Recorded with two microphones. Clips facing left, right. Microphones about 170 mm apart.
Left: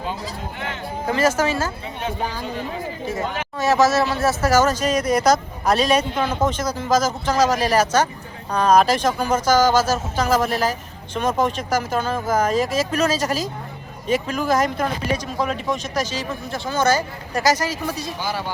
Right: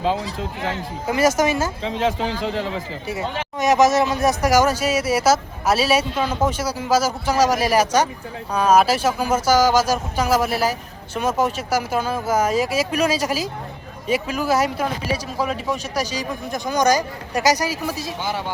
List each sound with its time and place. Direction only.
1.4 s speech: 20° right (ahead or behind)
1.8 s speech: 90° right
3.6 s speech: 15° right (ahead or behind)
18.2 s speech: 20° right (ahead or behind)